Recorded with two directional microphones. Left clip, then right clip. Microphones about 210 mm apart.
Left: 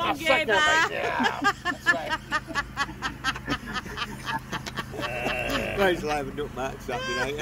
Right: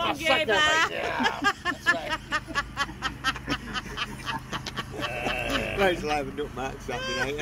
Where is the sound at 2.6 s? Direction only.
50° right (ahead or behind).